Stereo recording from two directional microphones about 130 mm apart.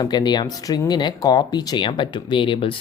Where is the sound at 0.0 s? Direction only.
35° left (ahead or behind).